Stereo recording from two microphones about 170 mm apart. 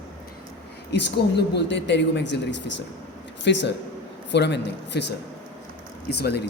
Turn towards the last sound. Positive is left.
turn(degrees=70)  # may be behind; listen again after turning